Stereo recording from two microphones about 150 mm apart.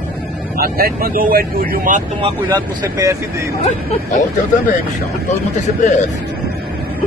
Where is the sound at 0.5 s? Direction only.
85° right; by 2.0 s 70° right (ahead or behind).